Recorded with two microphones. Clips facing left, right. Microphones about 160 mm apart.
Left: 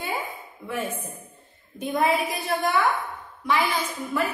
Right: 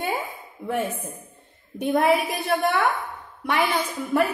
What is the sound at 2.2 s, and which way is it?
A woman's voice, 65° right (ahead or behind).